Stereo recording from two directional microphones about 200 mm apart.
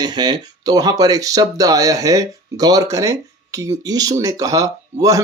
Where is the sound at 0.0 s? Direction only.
20° right (ahead or behind).